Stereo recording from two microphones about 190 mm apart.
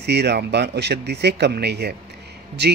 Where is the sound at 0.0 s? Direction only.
60° right (ahead or behind).